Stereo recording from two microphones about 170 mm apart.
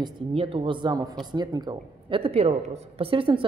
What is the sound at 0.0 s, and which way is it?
A woman's voice, 35° right (ahead or behind).